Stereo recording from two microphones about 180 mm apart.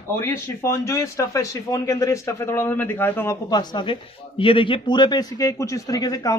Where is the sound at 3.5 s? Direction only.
25° left (ahead or behind).